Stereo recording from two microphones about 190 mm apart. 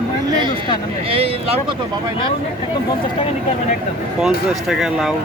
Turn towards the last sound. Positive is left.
turn(degrees=0)  # may be behind; listen again after turning